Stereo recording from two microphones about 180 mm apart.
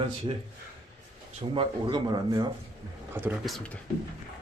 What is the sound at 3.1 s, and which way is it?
Speech, 10° right (ahead or behind).